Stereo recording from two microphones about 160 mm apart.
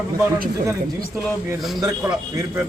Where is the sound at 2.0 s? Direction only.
10° right (ahead or behind).